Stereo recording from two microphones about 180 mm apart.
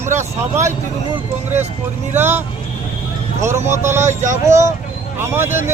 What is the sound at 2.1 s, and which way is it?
Speech, 10° right (ahead or behind).